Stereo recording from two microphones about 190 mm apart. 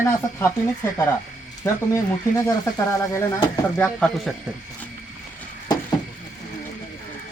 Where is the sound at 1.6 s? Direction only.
15° left (ahead or behind).